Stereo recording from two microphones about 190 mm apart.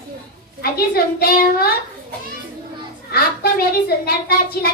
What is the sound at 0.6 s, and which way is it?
A woman's voice, 55° left (ahead or behind).